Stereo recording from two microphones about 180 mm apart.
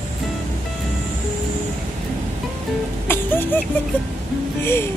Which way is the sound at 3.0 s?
10° left (ahead or behind).